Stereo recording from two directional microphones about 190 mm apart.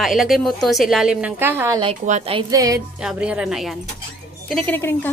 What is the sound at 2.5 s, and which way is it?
Speech, 20° right (ahead or behind).